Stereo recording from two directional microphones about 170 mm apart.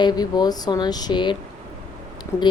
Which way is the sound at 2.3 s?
15° left (ahead or behind).